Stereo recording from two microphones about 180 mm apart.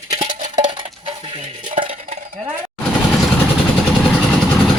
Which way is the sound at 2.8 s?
Centre (ahead or behind).